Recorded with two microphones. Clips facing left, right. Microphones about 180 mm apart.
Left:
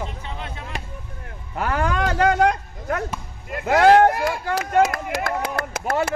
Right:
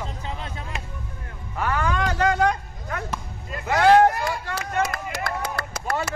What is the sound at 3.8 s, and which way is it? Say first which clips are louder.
Speech: left 2 dB; 50° left (ahead or behind).